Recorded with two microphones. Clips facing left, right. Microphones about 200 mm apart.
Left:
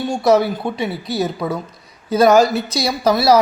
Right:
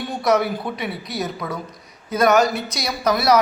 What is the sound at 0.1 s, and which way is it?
A woman's voice, 30° left (ahead or behind).